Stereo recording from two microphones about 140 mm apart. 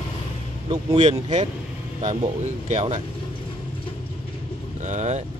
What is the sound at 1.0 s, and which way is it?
Speech, 55° right (ahead or behind).